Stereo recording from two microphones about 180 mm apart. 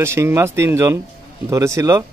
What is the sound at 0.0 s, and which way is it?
A man's voice, 15° right (ahead or behind).